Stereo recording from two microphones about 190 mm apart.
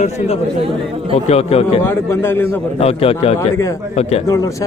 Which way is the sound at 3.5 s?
15° left (ahead or behind).